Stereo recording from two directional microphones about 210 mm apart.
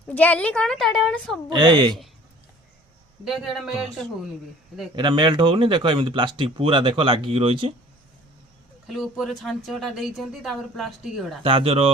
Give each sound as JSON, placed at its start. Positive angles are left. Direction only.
{"t": 0.1, "sound": "a woman's voice", "side_deg": 10}
{"t": 1.5, "sound": "speech", "side_deg": -20}
{"t": 3.2, "sound": "a woman's voice", "side_deg": 0}
{"t": 4.9, "sound": "speech", "side_deg": -20}
{"t": 8.9, "sound": "a woman's voice", "side_deg": 0}
{"t": 11.4, "sound": "speech", "side_deg": -25}